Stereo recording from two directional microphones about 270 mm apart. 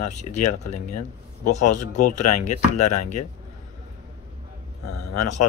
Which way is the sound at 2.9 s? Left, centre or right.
Left.